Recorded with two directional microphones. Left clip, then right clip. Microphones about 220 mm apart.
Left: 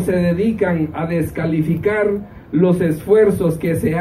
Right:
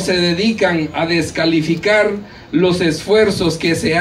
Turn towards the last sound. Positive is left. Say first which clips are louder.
# right 4 dB
turn(degrees=-40)  # may be behind; listen again after turning